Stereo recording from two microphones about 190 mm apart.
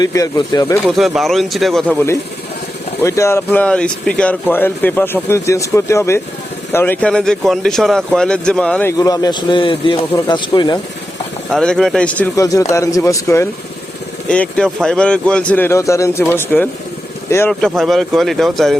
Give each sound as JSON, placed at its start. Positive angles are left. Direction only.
{"t": 0.0, "sound": "a man's voice", "side_deg": 20}
{"t": 0.9, "sound": "speech", "side_deg": 0}
{"t": 8.9, "sound": "a man's voice", "side_deg": 20}
{"t": 11.5, "sound": "speech", "side_deg": 5}
{"t": 17.5, "sound": "speech", "side_deg": 0}